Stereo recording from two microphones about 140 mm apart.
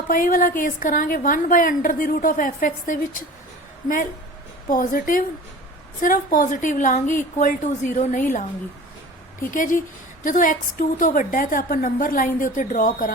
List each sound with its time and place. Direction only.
0.1 s a woman's voice: 85° left
4.7 s a woman's voice: 80° left; by 8.2 s 60° left (ahead or behind)
9.5 s a woman's voice: 75° left (ahead or behind)